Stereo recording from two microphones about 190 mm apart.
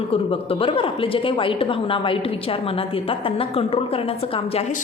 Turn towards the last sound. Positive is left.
turn(degrees=30)  # may be behind; listen again after turning